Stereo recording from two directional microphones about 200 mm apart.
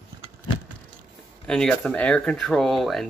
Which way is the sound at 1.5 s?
5° left (ahead or behind).